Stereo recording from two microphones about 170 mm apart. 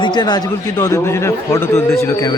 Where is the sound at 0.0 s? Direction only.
25° left (ahead or behind).